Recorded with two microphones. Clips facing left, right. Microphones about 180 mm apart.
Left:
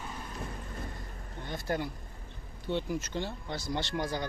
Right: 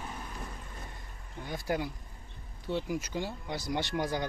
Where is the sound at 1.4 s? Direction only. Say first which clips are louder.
Right 1 dB; 10° right (ahead or behind).